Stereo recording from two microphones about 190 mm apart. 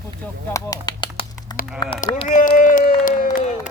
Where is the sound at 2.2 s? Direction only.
45° left (ahead or behind).